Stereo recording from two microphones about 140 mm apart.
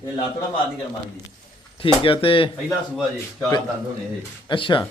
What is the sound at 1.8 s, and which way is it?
Speech, 40° left (ahead or behind).